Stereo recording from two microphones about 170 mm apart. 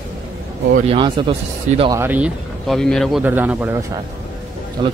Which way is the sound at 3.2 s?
10° right (ahead or behind).